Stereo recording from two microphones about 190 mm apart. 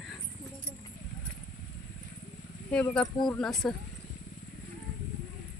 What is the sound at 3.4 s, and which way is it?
Speech, centre (ahead or behind).